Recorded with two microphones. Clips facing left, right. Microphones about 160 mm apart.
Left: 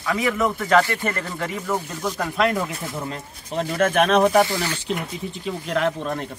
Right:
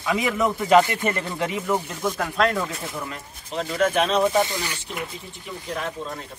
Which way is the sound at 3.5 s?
50° left (ahead or behind).